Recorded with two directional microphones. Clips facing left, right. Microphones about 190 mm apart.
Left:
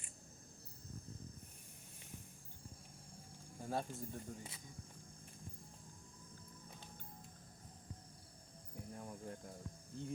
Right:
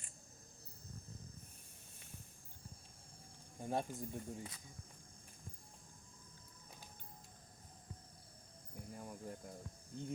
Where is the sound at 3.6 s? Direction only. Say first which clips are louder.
Right 2 dB; 20° right (ahead or behind).